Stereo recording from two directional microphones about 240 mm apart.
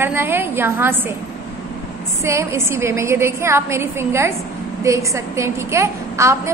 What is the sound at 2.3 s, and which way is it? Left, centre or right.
A woman's voice, centre.